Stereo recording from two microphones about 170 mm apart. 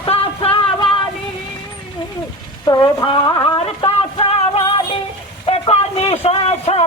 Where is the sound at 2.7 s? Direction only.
25° left (ahead or behind).